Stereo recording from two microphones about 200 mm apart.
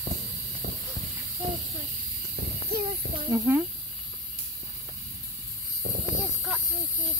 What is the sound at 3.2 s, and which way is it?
Speech, 15° right (ahead or behind).